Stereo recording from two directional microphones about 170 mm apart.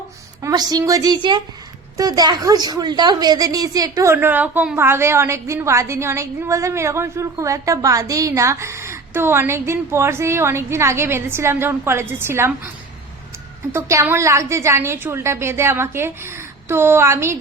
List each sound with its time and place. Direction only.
0.4 s a woman's voice: 20° right (ahead or behind)
13.7 s a woman's voice: 15° right (ahead or behind)